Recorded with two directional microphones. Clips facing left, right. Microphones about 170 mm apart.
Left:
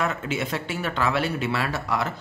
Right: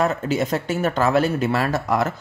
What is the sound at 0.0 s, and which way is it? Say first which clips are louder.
Speech: right 6 dB; 40° right (ahead or behind).